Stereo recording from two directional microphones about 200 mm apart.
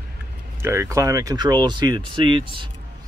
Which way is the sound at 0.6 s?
15° right (ahead or behind).